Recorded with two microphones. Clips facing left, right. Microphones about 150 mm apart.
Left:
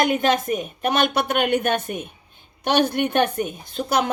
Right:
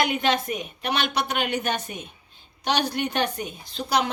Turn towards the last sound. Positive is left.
turn(degrees=50)  # may be behind; listen again after turning